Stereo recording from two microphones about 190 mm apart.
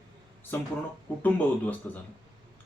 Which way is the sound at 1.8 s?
10° left (ahead or behind).